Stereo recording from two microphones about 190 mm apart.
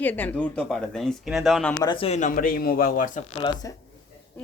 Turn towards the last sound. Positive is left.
turn(degrees=40)  # may be behind; listen again after turning